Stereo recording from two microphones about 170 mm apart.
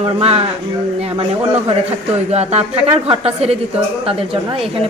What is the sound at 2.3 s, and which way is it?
Speech, 40° right (ahead or behind).